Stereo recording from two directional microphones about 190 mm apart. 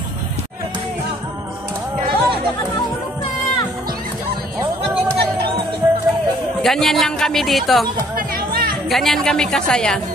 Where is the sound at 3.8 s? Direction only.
50° right (ahead or behind).